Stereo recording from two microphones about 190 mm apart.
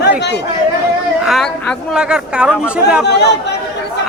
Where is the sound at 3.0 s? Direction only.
65° left (ahead or behind).